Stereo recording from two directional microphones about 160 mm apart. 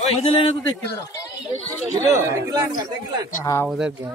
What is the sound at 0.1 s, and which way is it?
Speech, 35° left (ahead or behind).